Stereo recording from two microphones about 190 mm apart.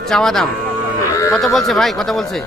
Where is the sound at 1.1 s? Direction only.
15° left (ahead or behind).